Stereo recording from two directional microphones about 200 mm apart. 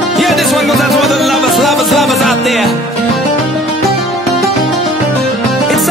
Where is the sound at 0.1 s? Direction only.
Centre (ahead or behind).